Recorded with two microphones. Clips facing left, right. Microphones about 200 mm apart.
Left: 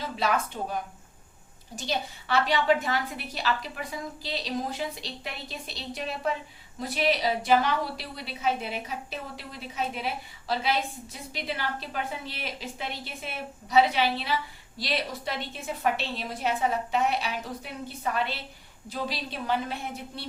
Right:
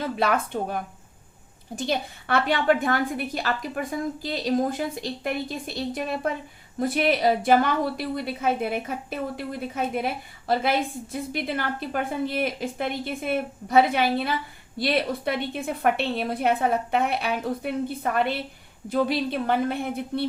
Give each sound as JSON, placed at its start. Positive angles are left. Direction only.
{"t": 0.2, "sound": "a woman's voice", "side_deg": -55}